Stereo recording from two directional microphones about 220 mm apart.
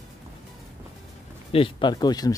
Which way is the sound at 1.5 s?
25° left (ahead or behind).